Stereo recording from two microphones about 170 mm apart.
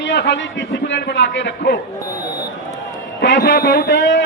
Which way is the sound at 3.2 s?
85° left.